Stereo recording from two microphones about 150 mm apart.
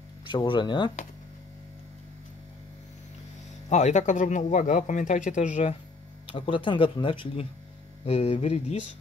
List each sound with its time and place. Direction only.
0.2 s speech: 30° left (ahead or behind)
3.6 s speech: 50° left (ahead or behind)
6.2 s speech: 35° left (ahead or behind)